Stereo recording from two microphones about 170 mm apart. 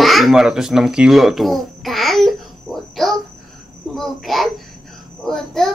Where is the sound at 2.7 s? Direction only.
Centre (ahead or behind).